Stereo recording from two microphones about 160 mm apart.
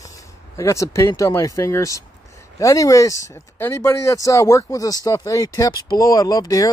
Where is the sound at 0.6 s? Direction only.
20° left (ahead or behind).